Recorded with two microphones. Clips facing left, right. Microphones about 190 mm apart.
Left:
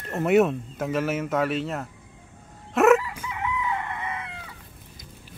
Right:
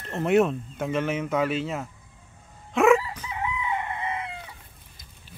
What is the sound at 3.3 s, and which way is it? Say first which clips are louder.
Chicken: left 1 dB; 25° right (ahead or behind).